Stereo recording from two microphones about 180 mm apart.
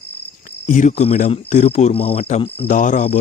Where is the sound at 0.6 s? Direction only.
40° left (ahead or behind).